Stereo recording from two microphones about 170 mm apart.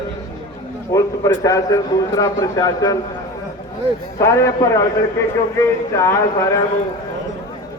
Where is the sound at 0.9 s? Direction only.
20° left (ahead or behind).